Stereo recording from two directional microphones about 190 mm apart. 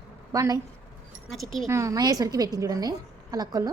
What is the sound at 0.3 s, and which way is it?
Speech, 20° right (ahead or behind).